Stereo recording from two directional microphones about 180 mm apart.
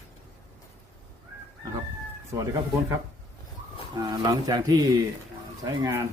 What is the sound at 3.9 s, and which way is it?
Speech, 25° right (ahead or behind).